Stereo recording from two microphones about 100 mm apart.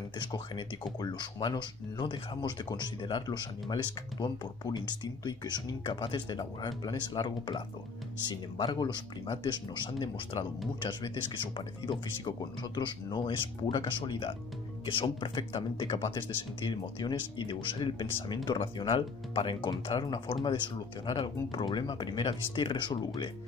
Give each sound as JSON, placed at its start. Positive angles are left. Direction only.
{"t": 0.2, "sound": "speech", "side_deg": 50}
{"t": 5.9, "sound": "speech", "side_deg": 55}